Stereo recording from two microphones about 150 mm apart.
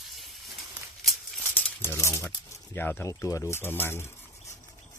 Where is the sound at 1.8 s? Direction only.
15° left (ahead or behind).